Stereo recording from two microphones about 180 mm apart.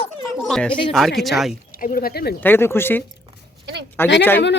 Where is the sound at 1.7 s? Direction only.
55° left (ahead or behind).